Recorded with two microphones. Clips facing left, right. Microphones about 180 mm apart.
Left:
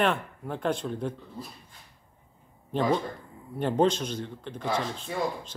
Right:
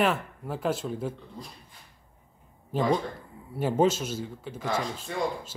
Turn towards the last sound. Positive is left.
turn(degrees=-5)  # may be behind; listen again after turning